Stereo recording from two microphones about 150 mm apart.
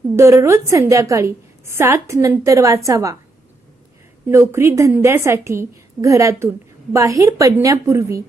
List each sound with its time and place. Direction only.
0.2 s a woman's voice: 20° right (ahead or behind)
4.3 s a woman's voice: 20° right (ahead or behind)